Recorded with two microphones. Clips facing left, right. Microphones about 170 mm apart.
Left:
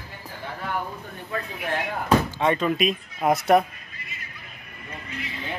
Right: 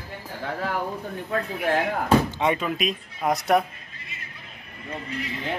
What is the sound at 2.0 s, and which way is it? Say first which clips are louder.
Speech: left 1 dB; 20° right (ahead or behind).